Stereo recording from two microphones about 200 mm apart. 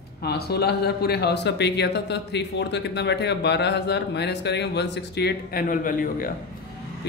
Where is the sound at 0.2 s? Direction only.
50° left (ahead or behind).